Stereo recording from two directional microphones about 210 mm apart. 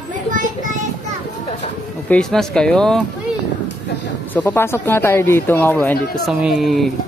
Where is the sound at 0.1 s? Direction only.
40° right (ahead or behind).